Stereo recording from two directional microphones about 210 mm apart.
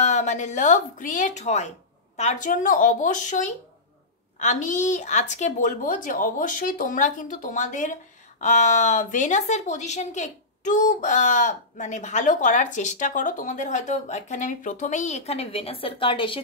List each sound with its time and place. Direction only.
0.0 s a woman's voice: 35° left (ahead or behind)